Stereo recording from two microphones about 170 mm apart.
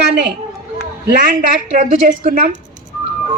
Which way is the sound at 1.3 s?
50° right (ahead or behind).